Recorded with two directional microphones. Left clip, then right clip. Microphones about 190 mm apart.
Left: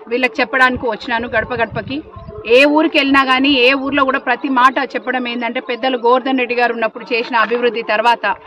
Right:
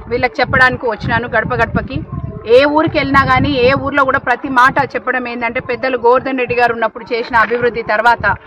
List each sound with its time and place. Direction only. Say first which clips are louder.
0.1 s a woman's voice: right 2 dB; 5° left (ahead or behind)